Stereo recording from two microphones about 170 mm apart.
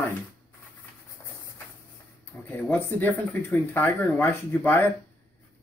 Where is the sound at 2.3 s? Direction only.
10° left (ahead or behind).